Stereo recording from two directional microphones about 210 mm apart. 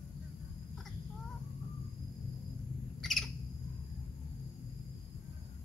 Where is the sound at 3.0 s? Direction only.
Centre (ahead or behind).